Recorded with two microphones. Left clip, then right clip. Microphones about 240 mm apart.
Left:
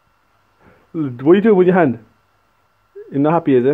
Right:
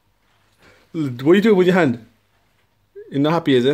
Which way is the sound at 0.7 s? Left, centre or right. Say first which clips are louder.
Left 2 dB; centre.